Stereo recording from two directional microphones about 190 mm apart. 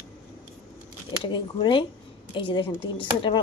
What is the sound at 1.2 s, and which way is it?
A woman's voice, 25° left (ahead or behind).